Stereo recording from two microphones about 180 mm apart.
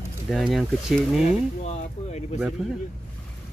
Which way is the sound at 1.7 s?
40° left (ahead or behind).